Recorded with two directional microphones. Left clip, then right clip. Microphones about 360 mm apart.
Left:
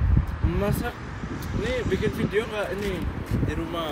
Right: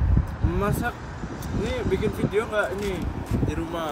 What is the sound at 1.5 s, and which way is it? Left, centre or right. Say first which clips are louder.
Speech: even; right.